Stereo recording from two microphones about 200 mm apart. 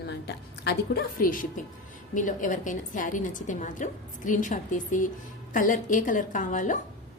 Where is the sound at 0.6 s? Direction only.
45° left (ahead or behind).